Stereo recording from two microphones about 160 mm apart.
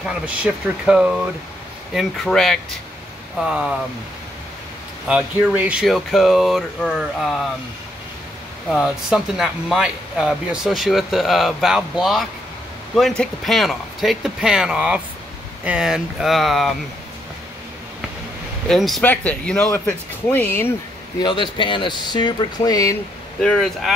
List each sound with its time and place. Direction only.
0.0 s speech: 5° right (ahead or behind)
5.0 s speech: 5° right (ahead or behind)
8.6 s speech: centre (ahead or behind)
18.7 s speech: centre (ahead or behind)
21.2 s speech: 30° left (ahead or behind)
23.4 s speech: 5° left (ahead or behind)